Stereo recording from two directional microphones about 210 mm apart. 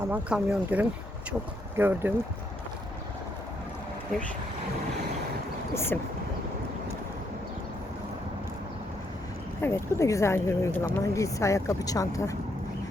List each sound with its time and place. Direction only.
0.1 s speech: 5° right (ahead or behind)
5.7 s speech: 10° left (ahead or behind)
9.6 s speech: 10° left (ahead or behind)